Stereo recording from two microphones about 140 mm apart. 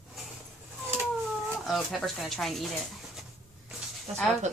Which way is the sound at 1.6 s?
Centre (ahead or behind).